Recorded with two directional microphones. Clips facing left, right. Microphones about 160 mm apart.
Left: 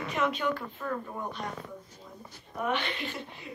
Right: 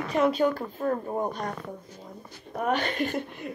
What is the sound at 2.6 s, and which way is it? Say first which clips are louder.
Speech: right 5 dB; 45° right (ahead or behind).